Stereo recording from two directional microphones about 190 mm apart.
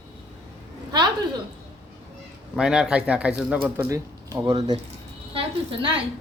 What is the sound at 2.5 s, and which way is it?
A woman's voice, 5° right (ahead or behind).